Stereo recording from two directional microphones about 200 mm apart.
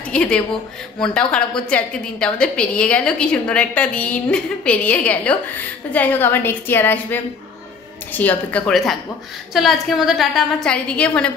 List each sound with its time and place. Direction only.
0.1 s a woman's voice: 5° left (ahead or behind)